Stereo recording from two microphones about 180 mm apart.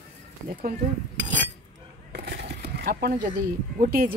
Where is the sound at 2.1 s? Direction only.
65° right (ahead or behind).